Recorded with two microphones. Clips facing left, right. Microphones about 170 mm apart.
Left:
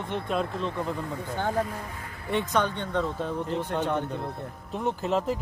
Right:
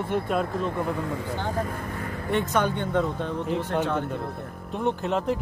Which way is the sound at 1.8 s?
55° right (ahead or behind).